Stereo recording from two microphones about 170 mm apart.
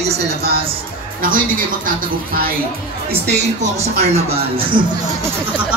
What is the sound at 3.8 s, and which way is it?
Speech, 40° right (ahead or behind).